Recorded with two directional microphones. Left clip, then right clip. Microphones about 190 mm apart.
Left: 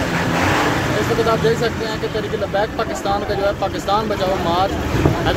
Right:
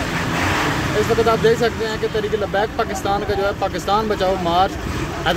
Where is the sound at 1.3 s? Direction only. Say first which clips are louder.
Right 1 dB; 35° right (ahead or behind).